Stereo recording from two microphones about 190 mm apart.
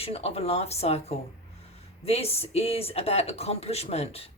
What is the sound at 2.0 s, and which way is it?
Speech, 30° left (ahead or behind).